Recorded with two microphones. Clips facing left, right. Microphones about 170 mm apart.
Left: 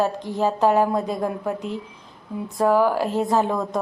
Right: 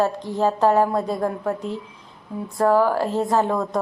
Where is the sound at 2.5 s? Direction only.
10° left (ahead or behind).